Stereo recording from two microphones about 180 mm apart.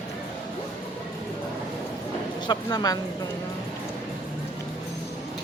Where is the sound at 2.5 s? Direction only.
20° left (ahead or behind).